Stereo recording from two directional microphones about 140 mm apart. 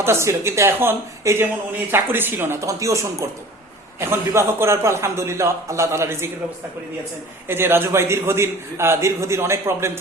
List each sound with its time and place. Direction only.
0.0 s a man's voice: 20° right (ahead or behind)
7.4 s a man's voice: 15° right (ahead or behind)